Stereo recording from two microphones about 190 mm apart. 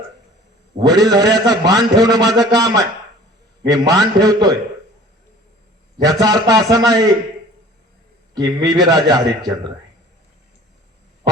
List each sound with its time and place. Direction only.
0.8 s a man's voice: 20° right (ahead or behind)
6.0 s a man's voice: 20° right (ahead or behind)
8.4 s a man's voice: 20° right (ahead or behind)